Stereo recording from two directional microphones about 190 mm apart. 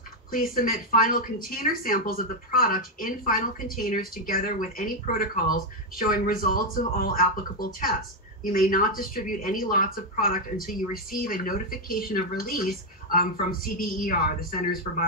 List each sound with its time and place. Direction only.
0.3 s speech: 45° left (ahead or behind)